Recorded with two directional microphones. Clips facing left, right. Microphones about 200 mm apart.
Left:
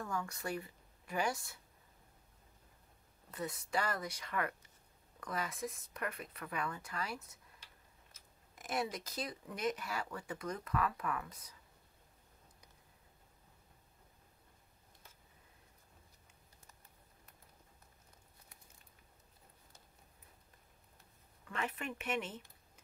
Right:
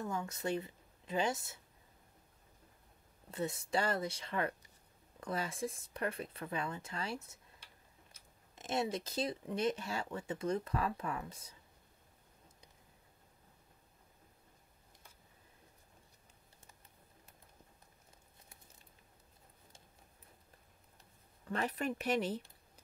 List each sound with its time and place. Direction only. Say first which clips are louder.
0.0 s speech: right 2 dB; 20° right (ahead or behind)
3.3 s speech: right 4 dB; 25° right (ahead or behind)
8.5 s speech: right 3 dB; 25° right (ahead or behind)
21.5 s speech: right 5 dB; 35° right (ahead or behind)